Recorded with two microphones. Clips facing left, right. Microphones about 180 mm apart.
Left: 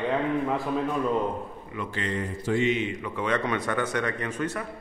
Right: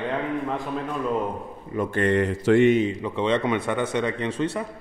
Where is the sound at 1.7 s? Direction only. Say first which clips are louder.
Right 9 dB; 50° right (ahead or behind); by 2.6 s 75° right (ahead or behind).